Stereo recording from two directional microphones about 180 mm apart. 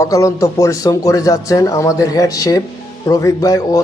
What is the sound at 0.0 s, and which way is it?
Speech, 20° left (ahead or behind).